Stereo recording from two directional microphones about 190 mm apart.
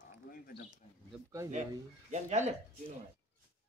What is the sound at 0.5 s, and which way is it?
Speech, 25° left (ahead or behind).